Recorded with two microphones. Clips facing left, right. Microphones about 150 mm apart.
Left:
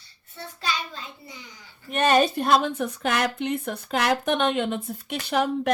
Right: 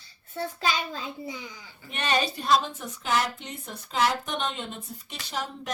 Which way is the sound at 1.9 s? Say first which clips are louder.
Left 8 dB; 45° left (ahead or behind).